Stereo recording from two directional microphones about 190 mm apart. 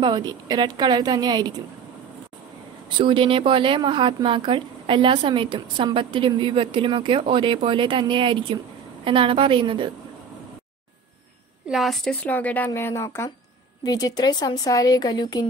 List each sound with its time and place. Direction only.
0.0 s speech: 20° right (ahead or behind)
3.0 s speech: 25° right (ahead or behind)
11.7 s a woman's voice: centre (ahead or behind); by 15.4 s 20° left (ahead or behind)